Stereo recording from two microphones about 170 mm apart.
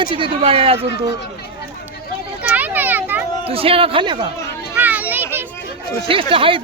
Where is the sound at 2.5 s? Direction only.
10° right (ahead or behind).